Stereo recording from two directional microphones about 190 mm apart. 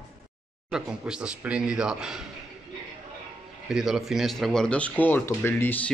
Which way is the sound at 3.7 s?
Centre (ahead or behind).